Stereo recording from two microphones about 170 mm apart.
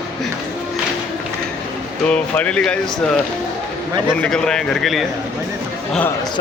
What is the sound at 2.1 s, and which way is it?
Speech, 5° left (ahead or behind).